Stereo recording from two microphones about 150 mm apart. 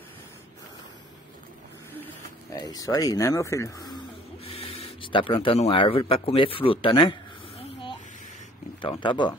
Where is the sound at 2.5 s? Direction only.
25° left (ahead or behind).